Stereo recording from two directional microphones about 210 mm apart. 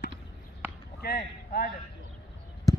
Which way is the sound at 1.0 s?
45° left (ahead or behind).